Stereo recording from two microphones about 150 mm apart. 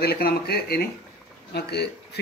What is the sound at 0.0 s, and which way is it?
Speech, 90° left.